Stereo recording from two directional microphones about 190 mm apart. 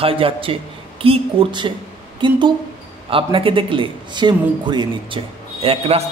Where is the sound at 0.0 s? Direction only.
30° right (ahead or behind).